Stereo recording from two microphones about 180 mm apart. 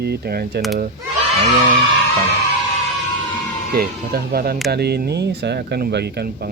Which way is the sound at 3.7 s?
60° right (ahead or behind).